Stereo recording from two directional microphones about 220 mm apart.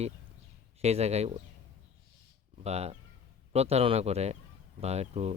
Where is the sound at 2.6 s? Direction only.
30° right (ahead or behind).